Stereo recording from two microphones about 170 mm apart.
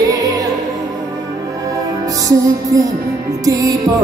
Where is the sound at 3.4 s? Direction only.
20° right (ahead or behind).